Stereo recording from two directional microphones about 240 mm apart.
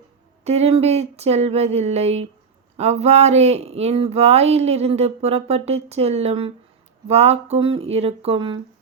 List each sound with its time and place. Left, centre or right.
0.4 s speech: right